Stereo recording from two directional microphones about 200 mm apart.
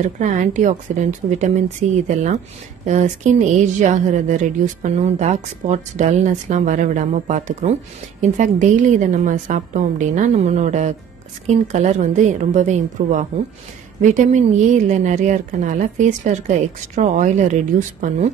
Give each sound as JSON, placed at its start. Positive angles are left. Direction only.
{"t": 0.2, "sound": "a woman's voice", "side_deg": -35}